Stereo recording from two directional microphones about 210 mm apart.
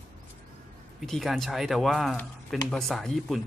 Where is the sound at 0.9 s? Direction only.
Centre (ahead or behind).